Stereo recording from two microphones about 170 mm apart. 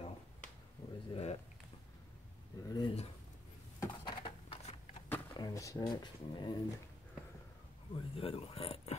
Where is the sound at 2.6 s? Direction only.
25° left (ahead or behind).